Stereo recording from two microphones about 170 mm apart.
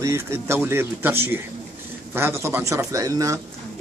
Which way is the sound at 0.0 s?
15° right (ahead or behind).